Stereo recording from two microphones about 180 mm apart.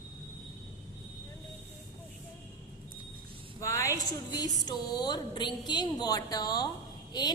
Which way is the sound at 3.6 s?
15° left (ahead or behind).